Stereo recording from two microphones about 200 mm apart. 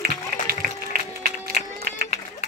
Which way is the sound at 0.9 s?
50° right (ahead or behind).